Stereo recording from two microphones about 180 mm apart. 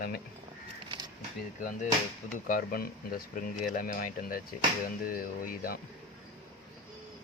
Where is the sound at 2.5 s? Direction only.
55° left (ahead or behind).